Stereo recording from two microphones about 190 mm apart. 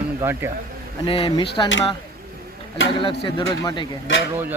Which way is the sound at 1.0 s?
25° left (ahead or behind).